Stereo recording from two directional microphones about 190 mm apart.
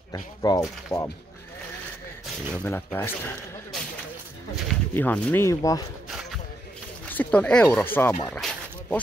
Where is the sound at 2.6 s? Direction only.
10° left (ahead or behind).